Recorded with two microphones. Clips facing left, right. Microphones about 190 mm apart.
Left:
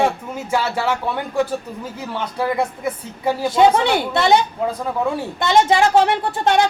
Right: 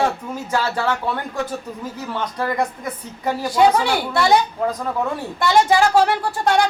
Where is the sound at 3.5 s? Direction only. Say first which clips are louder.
Left 1 dB; 20° left (ahead or behind).